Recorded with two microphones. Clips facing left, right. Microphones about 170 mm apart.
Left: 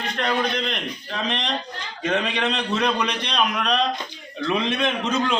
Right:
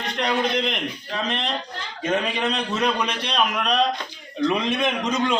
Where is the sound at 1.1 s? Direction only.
5° right (ahead or behind).